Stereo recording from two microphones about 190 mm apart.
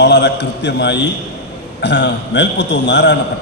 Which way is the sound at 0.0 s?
65° left (ahead or behind).